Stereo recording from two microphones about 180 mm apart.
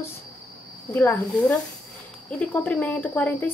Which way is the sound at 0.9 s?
10° left (ahead or behind).